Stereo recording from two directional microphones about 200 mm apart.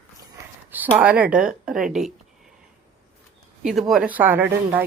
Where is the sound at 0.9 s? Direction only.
5° right (ahead or behind).